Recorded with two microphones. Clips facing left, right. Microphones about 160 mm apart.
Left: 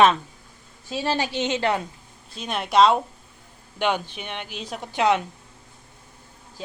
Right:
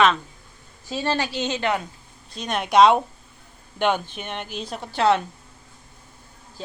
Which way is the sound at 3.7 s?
50° right (ahead or behind).